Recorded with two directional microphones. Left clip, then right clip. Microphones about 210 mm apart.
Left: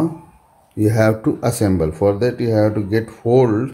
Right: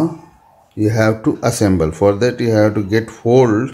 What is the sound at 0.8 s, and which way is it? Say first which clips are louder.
Speech: right 1 dB; 5° left (ahead or behind).